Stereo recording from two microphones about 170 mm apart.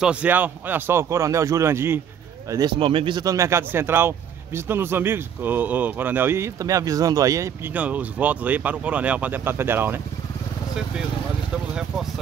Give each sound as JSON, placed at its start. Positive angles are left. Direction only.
{"t": 0.0, "sound": "speech", "side_deg": -5}
{"t": 2.5, "sound": "speech", "side_deg": -25}
{"t": 11.5, "sound": "a sound", "side_deg": -5}